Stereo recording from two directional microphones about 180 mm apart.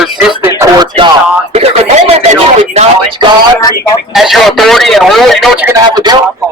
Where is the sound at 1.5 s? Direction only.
35° right (ahead or behind).